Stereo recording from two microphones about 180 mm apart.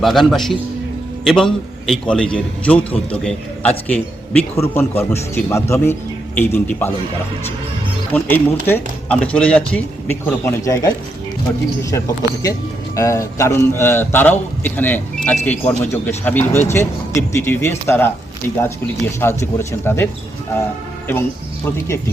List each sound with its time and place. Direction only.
0.0 s a man's voice: centre (ahead or behind)
8.1 s a man's voice: 10° left (ahead or behind)
19.2 s a man's voice: 15° left (ahead or behind)
21.1 s speech: 10° left (ahead or behind)